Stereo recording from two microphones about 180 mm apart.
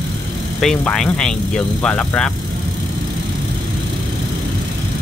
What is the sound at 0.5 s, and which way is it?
Speech, 5° left (ahead or behind).